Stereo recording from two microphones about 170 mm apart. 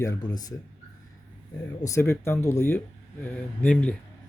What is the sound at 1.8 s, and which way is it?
Speech, 15° left (ahead or behind).